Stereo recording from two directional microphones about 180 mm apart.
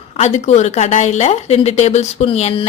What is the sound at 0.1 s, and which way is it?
A woman's voice, 40° left (ahead or behind).